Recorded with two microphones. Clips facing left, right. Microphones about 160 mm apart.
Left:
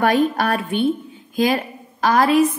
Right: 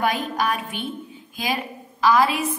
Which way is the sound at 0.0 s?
65° left (ahead or behind).